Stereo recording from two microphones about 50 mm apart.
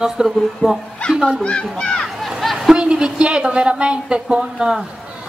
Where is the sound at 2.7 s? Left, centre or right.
Centre.